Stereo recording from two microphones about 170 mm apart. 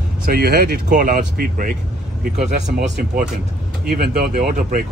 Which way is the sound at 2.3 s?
45° right (ahead or behind).